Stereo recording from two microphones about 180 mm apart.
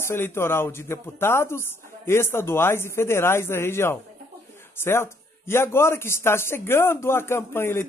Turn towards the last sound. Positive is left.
turn(degrees=15)  # may be behind; listen again after turning